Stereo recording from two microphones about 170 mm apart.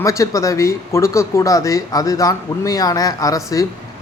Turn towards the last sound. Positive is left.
turn(degrees=20)  # may be behind; listen again after turning